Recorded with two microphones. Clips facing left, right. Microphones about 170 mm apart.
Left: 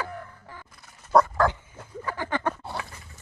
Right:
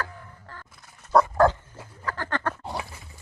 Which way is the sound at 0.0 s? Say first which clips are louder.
Left 2 dB; 10° left (ahead or behind).